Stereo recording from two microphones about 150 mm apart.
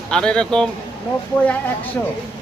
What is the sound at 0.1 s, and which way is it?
Speech, 5° left (ahead or behind).